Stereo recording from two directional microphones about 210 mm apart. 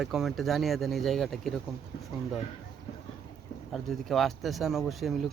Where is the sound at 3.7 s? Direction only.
Centre (ahead or behind).